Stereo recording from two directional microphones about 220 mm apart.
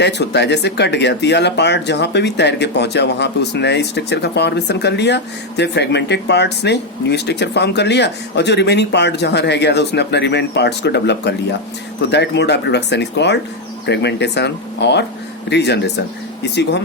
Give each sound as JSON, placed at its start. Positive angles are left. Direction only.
{"t": 0.0, "sound": "speech", "side_deg": 50}